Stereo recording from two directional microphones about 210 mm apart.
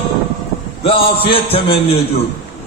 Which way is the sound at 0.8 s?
25° left (ahead or behind).